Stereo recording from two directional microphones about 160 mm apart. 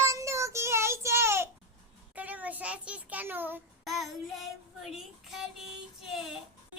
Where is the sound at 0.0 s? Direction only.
20° right (ahead or behind).